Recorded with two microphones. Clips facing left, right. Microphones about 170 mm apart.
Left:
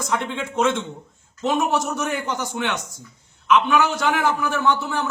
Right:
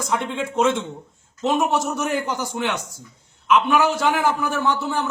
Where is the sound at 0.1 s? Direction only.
Centre (ahead or behind).